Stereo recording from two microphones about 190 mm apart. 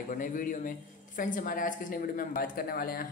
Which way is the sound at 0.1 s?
45° left (ahead or behind).